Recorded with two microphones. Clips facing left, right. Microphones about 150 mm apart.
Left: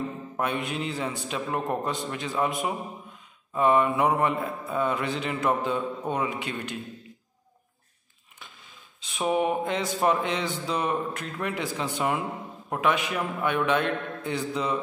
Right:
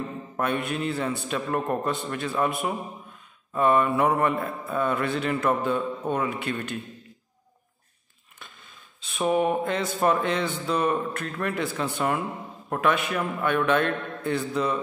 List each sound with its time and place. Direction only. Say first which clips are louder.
0.4 s mantra: right 2 dB; 15° left (ahead or behind)
9.0 s mantra: right 2 dB; 10° left (ahead or behind)